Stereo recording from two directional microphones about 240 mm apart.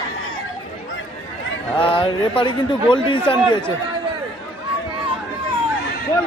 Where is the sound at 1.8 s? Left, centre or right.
Left.